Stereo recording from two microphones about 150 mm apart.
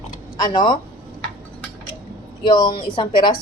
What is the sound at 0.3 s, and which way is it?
Speech, 30° left (ahead or behind).